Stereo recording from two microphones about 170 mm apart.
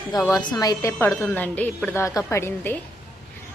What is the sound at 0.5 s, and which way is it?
Speech, 20° left (ahead or behind).